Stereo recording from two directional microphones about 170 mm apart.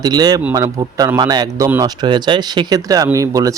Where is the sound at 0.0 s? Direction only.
25° right (ahead or behind).